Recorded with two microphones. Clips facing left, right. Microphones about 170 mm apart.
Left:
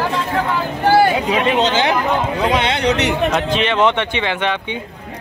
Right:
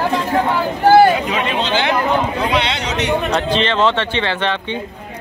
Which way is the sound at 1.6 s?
40° left (ahead or behind).